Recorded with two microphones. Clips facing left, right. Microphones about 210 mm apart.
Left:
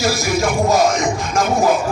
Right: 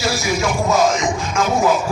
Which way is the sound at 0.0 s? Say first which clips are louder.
Left 2 dB; 50° left (ahead or behind).